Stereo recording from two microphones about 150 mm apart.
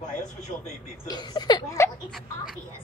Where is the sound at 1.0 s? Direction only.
30° left (ahead or behind).